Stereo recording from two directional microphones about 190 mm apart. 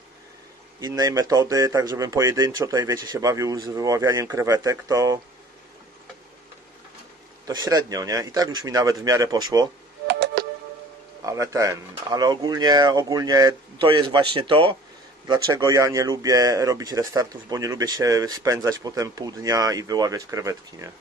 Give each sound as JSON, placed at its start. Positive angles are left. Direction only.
{"t": 0.7, "sound": "speech", "side_deg": -20}
{"t": 7.4, "sound": "speech", "side_deg": -20}
{"t": 10.0, "sound": "music", "side_deg": -60}
{"t": 11.2, "sound": "speech", "side_deg": -15}